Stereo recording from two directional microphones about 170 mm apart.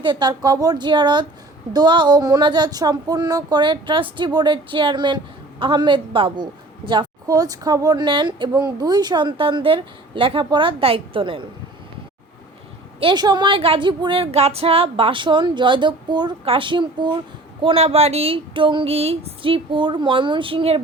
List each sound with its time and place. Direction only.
0.0 s speech: 25° right (ahead or behind)
13.0 s speech: 30° right (ahead or behind)